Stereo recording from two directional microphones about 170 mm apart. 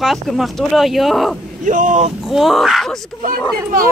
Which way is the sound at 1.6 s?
50° right (ahead or behind).